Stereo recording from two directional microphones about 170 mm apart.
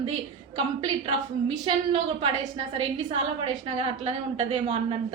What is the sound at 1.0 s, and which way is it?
A woman's voice, 35° right (ahead or behind).